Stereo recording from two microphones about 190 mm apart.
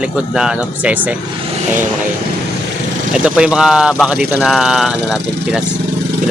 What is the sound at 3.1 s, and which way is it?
Speech, 5° right (ahead or behind).